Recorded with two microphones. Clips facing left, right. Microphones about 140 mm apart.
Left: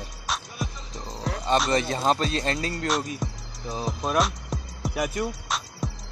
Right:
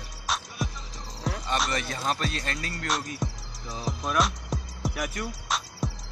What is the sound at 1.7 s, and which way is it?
Speech, 30° left (ahead or behind).